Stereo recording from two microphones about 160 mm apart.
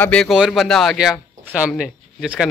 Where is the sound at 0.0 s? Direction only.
5° left (ahead or behind).